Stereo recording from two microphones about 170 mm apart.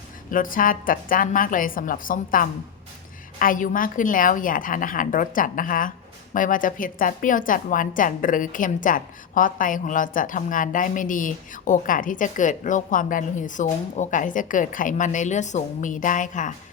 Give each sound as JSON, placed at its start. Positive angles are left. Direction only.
{"t": 0.3, "sound": "a woman's voice", "side_deg": 55}